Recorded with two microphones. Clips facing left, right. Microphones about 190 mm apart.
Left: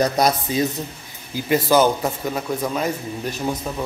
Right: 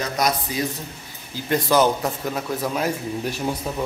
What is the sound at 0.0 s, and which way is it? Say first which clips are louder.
Speech: left 5 dB; 25° left (ahead or behind).